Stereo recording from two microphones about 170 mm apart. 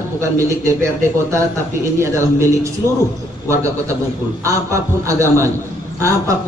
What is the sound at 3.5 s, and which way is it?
Speech, 15° right (ahead or behind).